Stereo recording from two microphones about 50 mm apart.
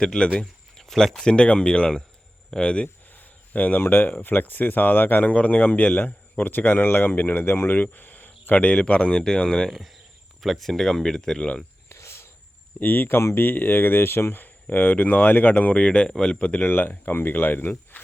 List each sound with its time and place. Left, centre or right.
0.0 s speech: centre
2.8 s speech: left
5.3 s speech: left
8.6 s speech: left
9.6 s speech: centre
11.9 s cricket: left
12.8 s speech: left
13.2 s speech: left
13.5 s speech: left
14.3 s speech: left; by 16.4 s centre
16.4 s speech: left
16.6 s speech: left